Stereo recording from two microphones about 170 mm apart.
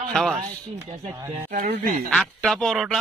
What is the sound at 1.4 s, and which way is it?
Speech, 50° right (ahead or behind).